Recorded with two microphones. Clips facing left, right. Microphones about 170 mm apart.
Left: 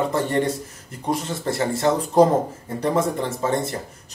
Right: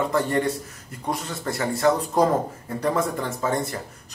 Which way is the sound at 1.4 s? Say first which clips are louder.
Right 1 dB; 25° left (ahead or behind).